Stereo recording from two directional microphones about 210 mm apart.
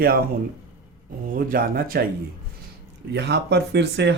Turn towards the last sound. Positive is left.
turn(degrees=-55)  # may be behind; listen again after turning